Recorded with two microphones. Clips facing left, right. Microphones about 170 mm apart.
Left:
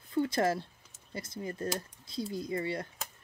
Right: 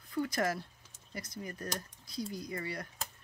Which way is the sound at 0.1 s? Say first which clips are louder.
Left 4 dB; 25° left (ahead or behind).